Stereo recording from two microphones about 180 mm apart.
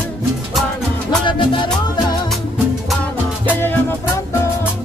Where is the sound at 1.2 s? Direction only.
25° left (ahead or behind).